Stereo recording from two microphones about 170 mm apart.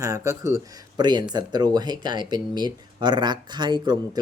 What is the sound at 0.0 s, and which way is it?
Speech, 20° right (ahead or behind).